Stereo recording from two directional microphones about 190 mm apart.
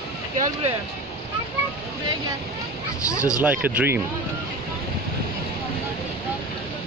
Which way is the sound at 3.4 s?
10° right (ahead or behind).